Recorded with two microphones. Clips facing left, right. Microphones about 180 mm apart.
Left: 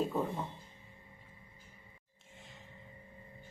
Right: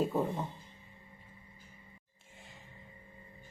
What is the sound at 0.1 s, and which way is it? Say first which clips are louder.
Music: right 2 dB; 15° right (ahead or behind).